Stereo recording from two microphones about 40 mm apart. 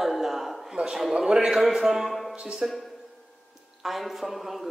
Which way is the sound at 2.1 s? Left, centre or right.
Centre.